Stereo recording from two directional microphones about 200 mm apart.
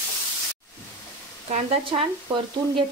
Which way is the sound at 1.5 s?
25° right (ahead or behind).